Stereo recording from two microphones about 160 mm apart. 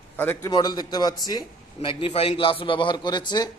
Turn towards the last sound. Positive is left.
turn(degrees=25)  # may be behind; listen again after turning